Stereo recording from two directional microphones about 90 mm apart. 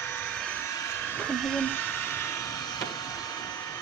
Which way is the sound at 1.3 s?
5° left (ahead or behind).